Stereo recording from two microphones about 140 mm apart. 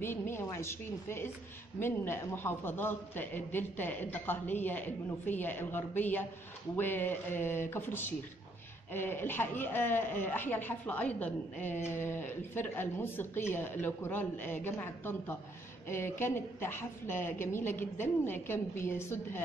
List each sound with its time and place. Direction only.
0.0 s speech: 15° left (ahead or behind)